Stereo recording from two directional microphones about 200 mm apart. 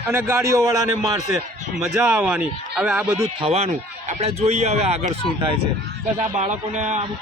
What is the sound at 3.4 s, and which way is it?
A man's voice, 30° right (ahead or behind).